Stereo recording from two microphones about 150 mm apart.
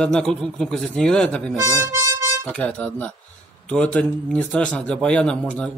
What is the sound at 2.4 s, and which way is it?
A man's voice, 5° left (ahead or behind).